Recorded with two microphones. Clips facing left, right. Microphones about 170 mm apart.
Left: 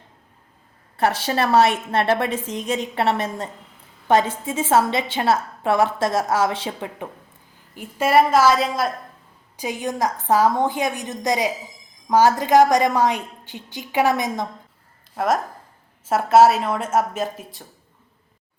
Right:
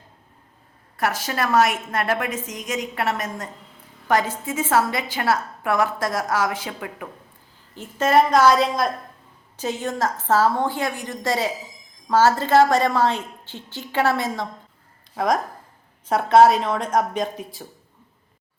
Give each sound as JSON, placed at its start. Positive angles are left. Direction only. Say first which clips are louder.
{"t": 0.9, "sound": "a woman's voice", "louder": "left 4 dB", "side_deg": 30}
{"t": 7.8, "sound": "a woman's voice", "louder": "left 1 dB", "side_deg": 10}
{"t": 15.1, "sound": "speech", "louder": "even", "side_deg": 0}